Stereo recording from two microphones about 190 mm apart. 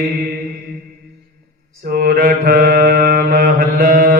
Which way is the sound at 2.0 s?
50° right (ahead or behind).